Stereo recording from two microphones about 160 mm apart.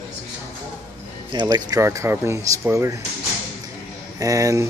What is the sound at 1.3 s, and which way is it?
Speech, 25° right (ahead or behind).